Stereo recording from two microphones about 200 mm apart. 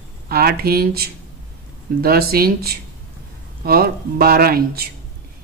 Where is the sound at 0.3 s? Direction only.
50° right (ahead or behind).